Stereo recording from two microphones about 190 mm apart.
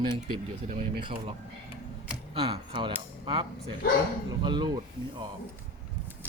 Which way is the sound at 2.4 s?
30° right (ahead or behind).